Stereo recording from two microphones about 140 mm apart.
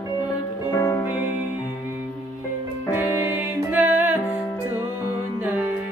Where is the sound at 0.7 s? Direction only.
20° left (ahead or behind).